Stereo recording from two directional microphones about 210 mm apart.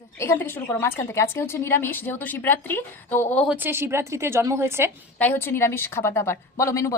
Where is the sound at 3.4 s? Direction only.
10° right (ahead or behind).